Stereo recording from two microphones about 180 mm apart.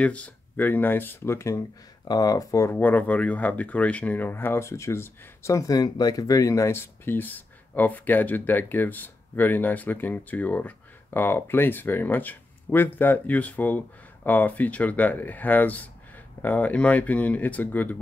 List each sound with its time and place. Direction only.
0.0 s speech: 5° left (ahead or behind)